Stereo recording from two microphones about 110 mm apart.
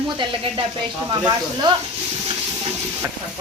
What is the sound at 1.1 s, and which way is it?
Stir, 40° right (ahead or behind).